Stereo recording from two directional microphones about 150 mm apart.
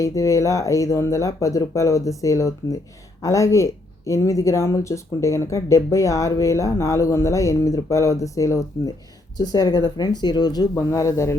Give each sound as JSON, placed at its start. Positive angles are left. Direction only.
{"t": 0.0, "sound": "speech", "side_deg": 20}